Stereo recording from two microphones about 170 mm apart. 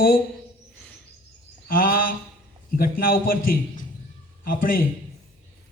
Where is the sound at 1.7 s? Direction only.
60° left (ahead or behind).